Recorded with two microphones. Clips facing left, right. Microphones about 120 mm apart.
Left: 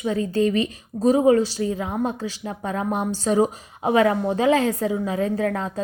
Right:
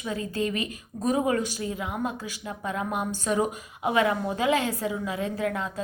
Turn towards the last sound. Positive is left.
turn(degrees=35)  # may be behind; listen again after turning